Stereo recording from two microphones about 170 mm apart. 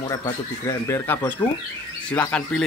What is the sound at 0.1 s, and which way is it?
Speech, 20° left (ahead or behind).